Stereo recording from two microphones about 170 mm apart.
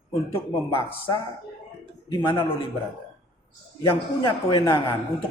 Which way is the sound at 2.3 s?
35° left (ahead or behind).